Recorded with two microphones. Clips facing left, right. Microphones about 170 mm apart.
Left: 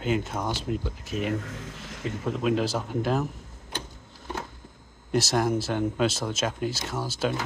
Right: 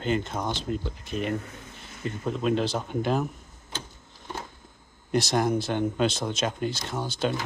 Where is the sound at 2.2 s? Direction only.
5° left (ahead or behind).